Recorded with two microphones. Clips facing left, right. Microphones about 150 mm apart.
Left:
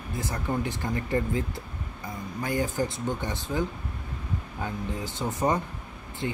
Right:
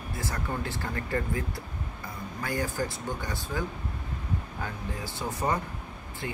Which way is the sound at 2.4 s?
20° left (ahead or behind).